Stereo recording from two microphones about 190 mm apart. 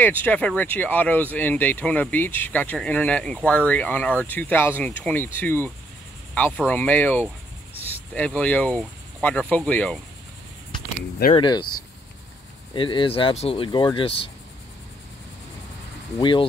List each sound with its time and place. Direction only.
0.0 s speech: 10° left (ahead or behind)
11.3 s speech: 25° left (ahead or behind)
12.7 s speech: 25° left (ahead or behind)
16.2 s speech: 25° left (ahead or behind)